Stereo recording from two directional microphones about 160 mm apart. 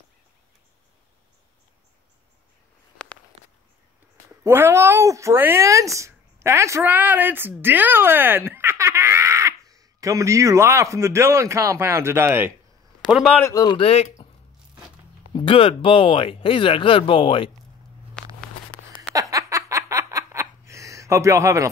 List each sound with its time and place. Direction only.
3.0 s walk: 5° left (ahead or behind)
4.4 s speech: 15° right (ahead or behind)
13.0 s speech: centre (ahead or behind)
13.4 s speech: 20° left (ahead or behind)
13.7 s speech: 40° left (ahead or behind)
15.3 s speech: 35° left (ahead or behind)
18.2 s a sound: 5° left (ahead or behind)
19.3 s a sound: 20° right (ahead or behind)